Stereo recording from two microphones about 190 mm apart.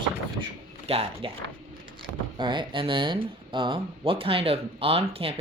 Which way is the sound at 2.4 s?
25° right (ahead or behind).